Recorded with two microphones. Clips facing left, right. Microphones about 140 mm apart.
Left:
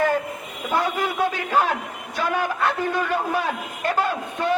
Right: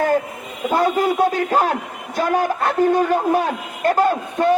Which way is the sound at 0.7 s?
40° right (ahead or behind).